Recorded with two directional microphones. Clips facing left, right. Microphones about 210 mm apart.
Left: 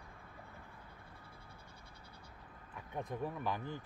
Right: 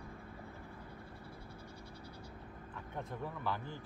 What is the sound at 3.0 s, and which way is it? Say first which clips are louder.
Speech: left 3 dB; 15° left (ahead or behind).